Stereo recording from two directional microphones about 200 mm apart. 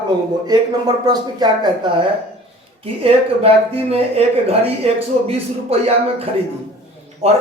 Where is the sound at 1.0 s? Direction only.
20° right (ahead or behind).